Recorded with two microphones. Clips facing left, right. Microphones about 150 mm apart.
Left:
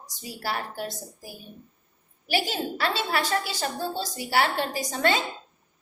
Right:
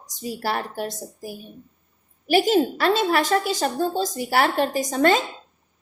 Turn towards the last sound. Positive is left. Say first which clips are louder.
# right 6 dB
turn(degrees=-45)  # may be behind; listen again after turning